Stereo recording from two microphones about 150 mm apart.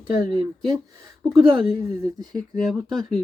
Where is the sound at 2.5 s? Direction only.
Centre (ahead or behind).